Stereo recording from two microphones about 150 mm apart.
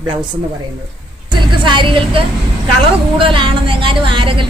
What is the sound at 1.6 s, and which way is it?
A woman's voice, 35° right (ahead or behind).